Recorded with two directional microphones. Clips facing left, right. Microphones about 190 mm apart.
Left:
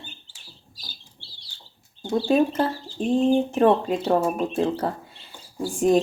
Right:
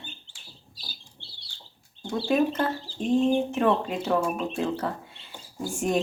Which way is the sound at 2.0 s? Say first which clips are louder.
Left 4 dB; 30° left (ahead or behind).